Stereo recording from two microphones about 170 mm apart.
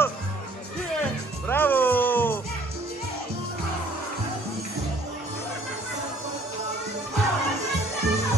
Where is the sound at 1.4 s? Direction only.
10° left (ahead or behind).